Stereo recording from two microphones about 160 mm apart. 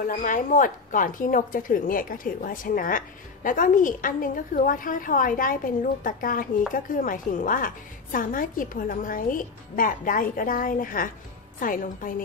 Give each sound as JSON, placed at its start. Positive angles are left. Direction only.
{"t": 0.0, "sound": "a woman's voice", "side_deg": 60}